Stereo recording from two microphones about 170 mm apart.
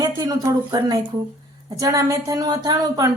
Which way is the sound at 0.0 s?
20° right (ahead or behind).